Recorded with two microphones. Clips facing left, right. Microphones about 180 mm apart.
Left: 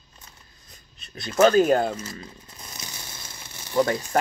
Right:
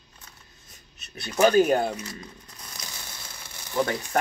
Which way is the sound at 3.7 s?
15° left (ahead or behind).